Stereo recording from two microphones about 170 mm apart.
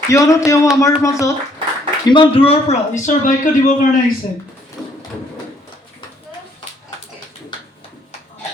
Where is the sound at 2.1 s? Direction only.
30° left (ahead or behind); by 3.7 s 50° left (ahead or behind).